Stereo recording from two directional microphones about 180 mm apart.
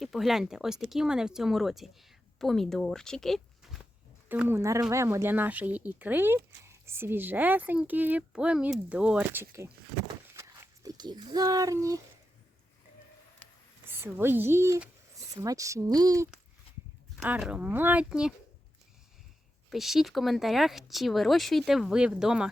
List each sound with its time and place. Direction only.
0.0 s speech: centre (ahead or behind)
4.3 s a woman's voice: 10° right (ahead or behind)
13.8 s speech: 10° right (ahead or behind)
17.2 s a woman's voice: 5° right (ahead or behind)
19.7 s speech: centre (ahead or behind)